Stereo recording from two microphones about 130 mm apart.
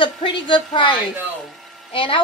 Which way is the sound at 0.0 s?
40° left (ahead or behind).